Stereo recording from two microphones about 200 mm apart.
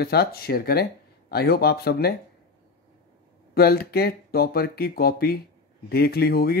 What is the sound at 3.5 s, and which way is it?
Speech, 50° left (ahead or behind).